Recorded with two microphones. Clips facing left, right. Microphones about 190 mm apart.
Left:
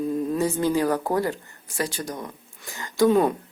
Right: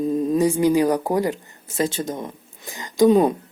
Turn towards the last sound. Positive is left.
turn(degrees=-15)  # may be behind; listen again after turning